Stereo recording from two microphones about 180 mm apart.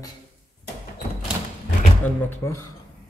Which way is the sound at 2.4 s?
15° left (ahead or behind).